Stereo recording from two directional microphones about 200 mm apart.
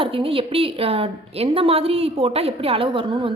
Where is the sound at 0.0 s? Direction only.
25° right (ahead or behind).